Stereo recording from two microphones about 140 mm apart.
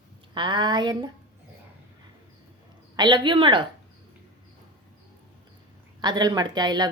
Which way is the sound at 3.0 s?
30° right (ahead or behind).